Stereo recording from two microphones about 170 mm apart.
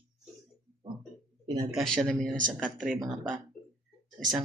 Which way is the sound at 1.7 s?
Centre (ahead or behind).